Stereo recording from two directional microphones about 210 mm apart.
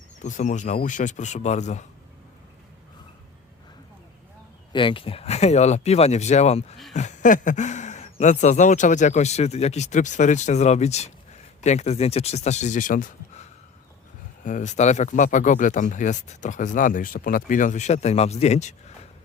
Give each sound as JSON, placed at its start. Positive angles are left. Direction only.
{"t": 0.2, "sound": "speech", "side_deg": 35}
{"t": 4.7, "sound": "speech", "side_deg": 25}